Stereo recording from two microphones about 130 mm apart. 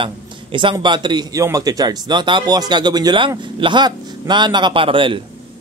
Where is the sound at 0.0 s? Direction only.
40° right (ahead or behind).